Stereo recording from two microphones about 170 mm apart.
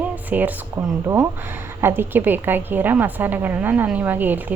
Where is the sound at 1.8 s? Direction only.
15° right (ahead or behind).